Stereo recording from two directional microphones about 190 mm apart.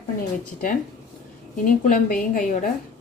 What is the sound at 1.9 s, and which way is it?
Speech, 45° left (ahead or behind).